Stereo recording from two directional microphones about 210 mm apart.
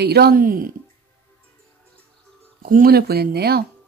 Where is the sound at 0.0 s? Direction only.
50° right (ahead or behind).